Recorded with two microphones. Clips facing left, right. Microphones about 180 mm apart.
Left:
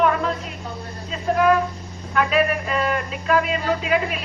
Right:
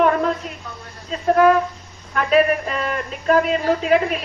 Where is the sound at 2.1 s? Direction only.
40° right (ahead or behind).